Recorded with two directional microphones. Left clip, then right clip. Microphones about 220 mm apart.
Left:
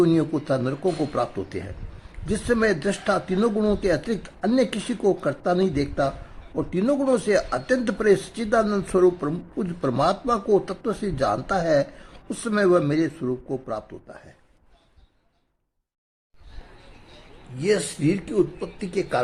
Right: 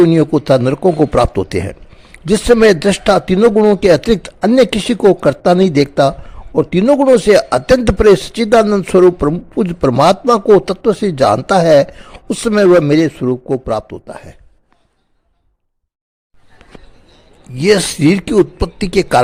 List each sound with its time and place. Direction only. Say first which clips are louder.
0.1 s speech: right 12 dB; 35° right (ahead or behind)
17.6 s speech: right 12 dB; 40° right (ahead or behind)